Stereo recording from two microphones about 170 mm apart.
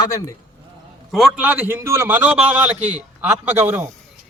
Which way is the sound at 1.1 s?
Centre (ahead or behind).